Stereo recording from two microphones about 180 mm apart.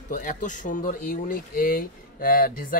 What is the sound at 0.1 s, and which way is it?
Speech, 45° left (ahead or behind).